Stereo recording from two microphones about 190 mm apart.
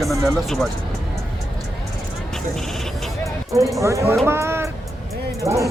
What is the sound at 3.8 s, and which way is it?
Speech, 15° right (ahead or behind).